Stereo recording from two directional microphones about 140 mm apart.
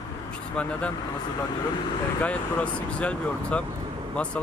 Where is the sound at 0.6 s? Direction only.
10° left (ahead or behind).